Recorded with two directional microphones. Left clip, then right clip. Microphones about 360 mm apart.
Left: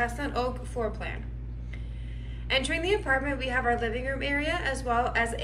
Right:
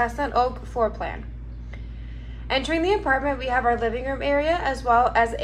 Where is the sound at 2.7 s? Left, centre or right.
Centre.